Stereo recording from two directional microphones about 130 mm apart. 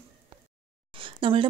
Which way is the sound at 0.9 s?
40° right (ahead or behind).